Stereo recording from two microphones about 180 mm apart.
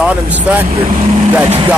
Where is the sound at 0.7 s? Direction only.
35° right (ahead or behind).